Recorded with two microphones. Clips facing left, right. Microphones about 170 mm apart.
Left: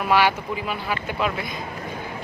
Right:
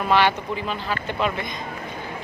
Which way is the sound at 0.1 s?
5° left (ahead or behind).